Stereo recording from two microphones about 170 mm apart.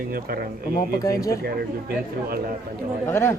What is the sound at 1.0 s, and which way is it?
Speech, 20° left (ahead or behind).